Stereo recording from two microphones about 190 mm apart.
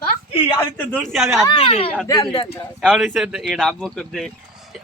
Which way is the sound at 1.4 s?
25° left (ahead or behind).